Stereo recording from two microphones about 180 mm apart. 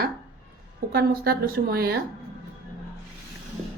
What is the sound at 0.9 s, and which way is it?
A woman's voice, 60° right (ahead or behind).